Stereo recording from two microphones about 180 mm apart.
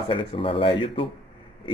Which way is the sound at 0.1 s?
30° left (ahead or behind).